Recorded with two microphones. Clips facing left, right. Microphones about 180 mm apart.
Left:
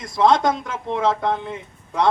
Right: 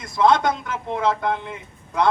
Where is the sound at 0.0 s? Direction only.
40° left (ahead or behind).